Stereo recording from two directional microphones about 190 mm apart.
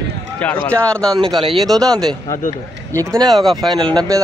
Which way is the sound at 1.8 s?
20° right (ahead or behind).